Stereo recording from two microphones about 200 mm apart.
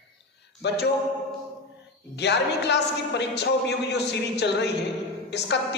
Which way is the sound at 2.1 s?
60° left (ahead or behind).